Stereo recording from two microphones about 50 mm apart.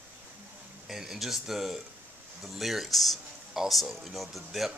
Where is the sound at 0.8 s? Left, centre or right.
Centre.